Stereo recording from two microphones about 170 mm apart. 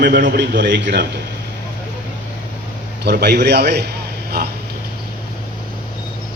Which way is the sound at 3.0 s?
75° right (ahead or behind).